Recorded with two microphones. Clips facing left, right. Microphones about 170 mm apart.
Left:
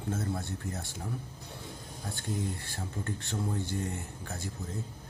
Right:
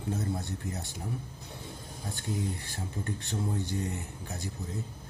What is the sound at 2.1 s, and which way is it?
Speech, 15° right (ahead or behind).